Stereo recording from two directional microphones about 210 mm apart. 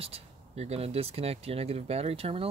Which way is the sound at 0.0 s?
30° right (ahead or behind).